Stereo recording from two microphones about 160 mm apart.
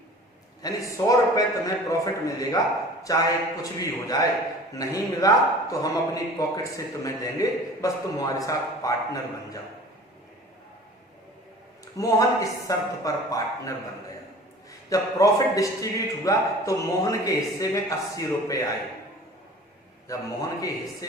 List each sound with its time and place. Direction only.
0.6 s a man's voice: 20° left (ahead or behind)
11.9 s a man's voice: 20° left (ahead or behind)
14.8 s a man's voice: 20° left (ahead or behind)
20.1 s a man's voice: 20° left (ahead or behind)